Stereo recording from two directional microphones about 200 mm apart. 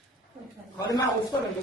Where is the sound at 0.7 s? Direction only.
20° left (ahead or behind).